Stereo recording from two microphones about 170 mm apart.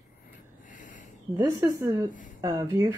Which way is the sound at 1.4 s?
15° right (ahead or behind).